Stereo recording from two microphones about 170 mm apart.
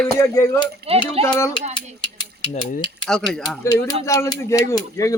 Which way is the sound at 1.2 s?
15° left (ahead or behind).